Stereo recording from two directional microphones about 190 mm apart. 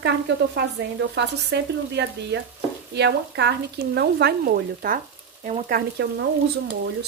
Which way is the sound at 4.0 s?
60° right (ahead or behind).